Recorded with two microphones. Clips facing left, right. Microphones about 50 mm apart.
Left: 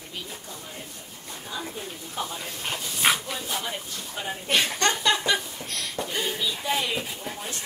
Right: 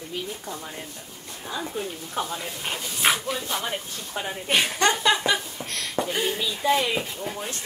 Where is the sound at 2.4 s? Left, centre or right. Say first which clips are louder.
Right 1 dB; centre.